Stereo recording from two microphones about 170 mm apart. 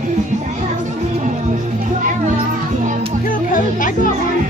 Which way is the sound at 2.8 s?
45° right (ahead or behind).